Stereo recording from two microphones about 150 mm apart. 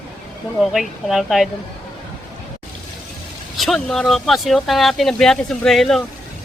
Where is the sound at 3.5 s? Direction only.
Centre (ahead or behind).